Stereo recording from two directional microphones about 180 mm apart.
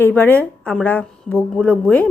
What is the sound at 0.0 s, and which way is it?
A woman's voice, 10° left (ahead or behind).